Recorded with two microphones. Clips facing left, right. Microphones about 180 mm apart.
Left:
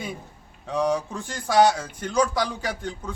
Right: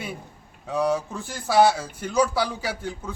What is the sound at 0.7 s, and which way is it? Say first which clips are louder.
A man's voice: even; 5° right (ahead or behind).